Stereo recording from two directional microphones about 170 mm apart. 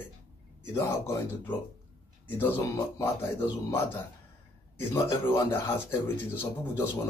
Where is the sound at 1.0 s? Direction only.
15° left (ahead or behind).